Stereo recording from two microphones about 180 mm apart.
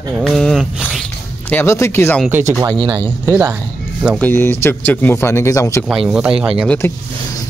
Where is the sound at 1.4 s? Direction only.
10° left (ahead or behind).